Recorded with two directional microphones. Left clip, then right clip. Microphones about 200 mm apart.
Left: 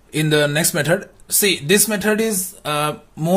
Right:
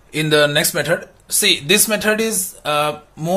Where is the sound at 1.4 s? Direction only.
20° left (ahead or behind).